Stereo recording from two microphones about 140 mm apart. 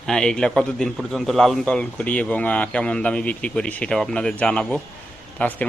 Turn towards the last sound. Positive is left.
turn(degrees=10)  # may be behind; listen again after turning